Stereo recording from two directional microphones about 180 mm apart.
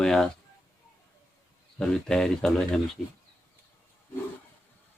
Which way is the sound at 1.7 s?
5° left (ahead or behind).